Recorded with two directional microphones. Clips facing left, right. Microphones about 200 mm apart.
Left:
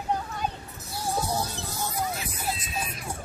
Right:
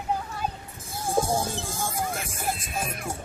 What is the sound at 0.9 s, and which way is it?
Music, 50° right (ahead or behind).